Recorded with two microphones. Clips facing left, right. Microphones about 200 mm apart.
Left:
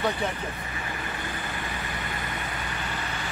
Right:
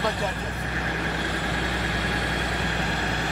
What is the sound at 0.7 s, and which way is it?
Vehicle, 75° right (ahead or behind).